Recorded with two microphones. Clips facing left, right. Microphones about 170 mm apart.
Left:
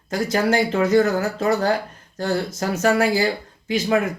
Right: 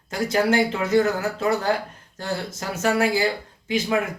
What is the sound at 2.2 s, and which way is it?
Speech, 40° left (ahead or behind).